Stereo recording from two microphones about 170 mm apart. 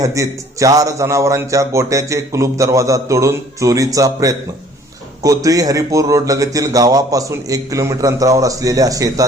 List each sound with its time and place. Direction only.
0.0 s a man's voice: 20° right (ahead or behind)